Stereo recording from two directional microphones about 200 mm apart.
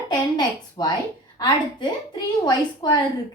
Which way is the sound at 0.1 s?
20° left (ahead or behind).